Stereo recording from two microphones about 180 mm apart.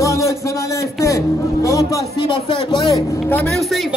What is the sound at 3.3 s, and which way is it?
Speech, 5° left (ahead or behind).